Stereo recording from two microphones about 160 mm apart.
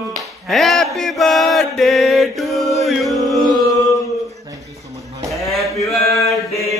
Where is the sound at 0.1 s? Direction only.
Centre (ahead or behind).